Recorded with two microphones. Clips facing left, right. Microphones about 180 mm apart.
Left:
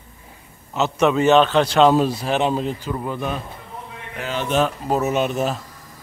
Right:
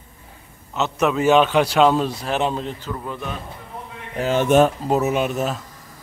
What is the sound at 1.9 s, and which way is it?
Speech, 5° left (ahead or behind).